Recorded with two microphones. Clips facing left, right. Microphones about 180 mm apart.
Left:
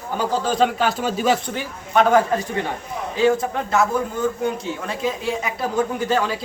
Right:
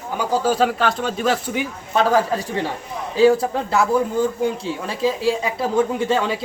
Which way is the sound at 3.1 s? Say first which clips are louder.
Right 4 dB; 35° right (ahead or behind).